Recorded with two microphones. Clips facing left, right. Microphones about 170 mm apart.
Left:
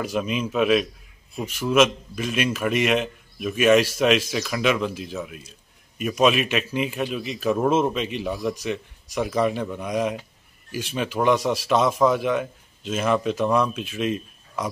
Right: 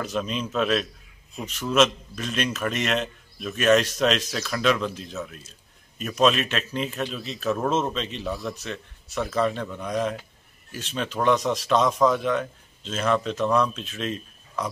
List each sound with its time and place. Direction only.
0.0 s a man's voice: 10° left (ahead or behind)